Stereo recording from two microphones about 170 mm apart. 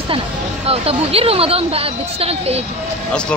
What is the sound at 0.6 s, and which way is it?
Speech, 35° right (ahead or behind).